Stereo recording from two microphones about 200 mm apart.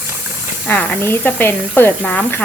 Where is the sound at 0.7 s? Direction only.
10° left (ahead or behind).